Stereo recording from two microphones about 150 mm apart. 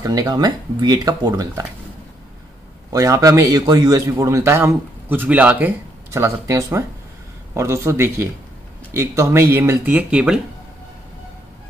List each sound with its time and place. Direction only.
0.0 s a man's voice: 25° right (ahead or behind)
2.9 s a man's voice: 25° right (ahead or behind); by 10.4 s 5° right (ahead or behind)